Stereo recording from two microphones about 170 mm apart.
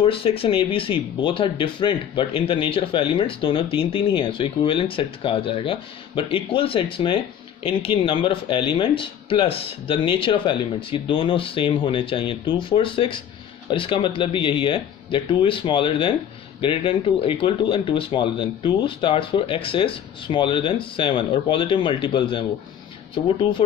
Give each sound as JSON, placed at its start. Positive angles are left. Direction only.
{"t": 0.0, "sound": "speech", "side_deg": 35}